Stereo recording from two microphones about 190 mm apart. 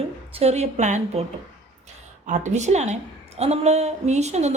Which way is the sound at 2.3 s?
40° right (ahead or behind).